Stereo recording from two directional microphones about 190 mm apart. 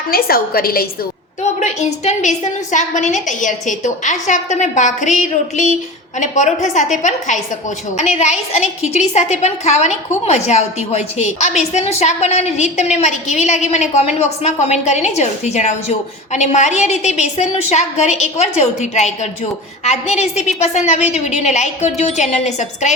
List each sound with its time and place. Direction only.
0.1 s a woman's voice: 50° left (ahead or behind)
1.5 s a woman's voice: 35° left (ahead or behind)
7.9 s a woman's voice: 35° left (ahead or behind)